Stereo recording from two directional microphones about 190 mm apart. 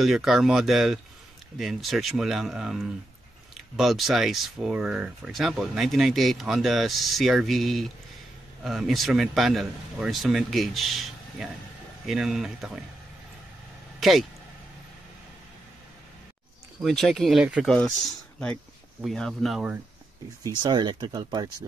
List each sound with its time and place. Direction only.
0.0 s speech: centre (ahead or behind)
13.9 s vehicle: centre (ahead or behind)
16.8 s speech: centre (ahead or behind)
18.9 s speech: centre (ahead or behind)
20.4 s speech: 25° right (ahead or behind)